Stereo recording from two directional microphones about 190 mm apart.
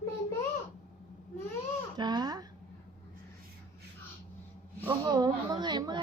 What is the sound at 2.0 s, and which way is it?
Babbling, 20° right (ahead or behind).